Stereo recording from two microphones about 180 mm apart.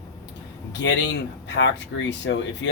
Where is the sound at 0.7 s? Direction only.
75° left (ahead or behind).